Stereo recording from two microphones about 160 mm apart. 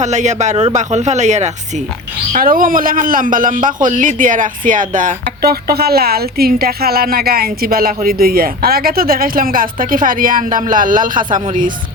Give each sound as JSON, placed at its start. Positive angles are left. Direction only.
{"t": 0.0, "sound": "speech", "side_deg": -45}
{"t": 2.3, "sound": "speech", "side_deg": -60}